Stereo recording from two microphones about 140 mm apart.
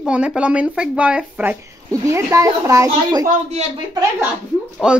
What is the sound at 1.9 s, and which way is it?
Speech, 20° right (ahead or behind).